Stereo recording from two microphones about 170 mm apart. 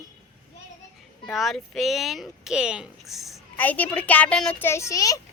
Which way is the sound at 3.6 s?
10° left (ahead or behind).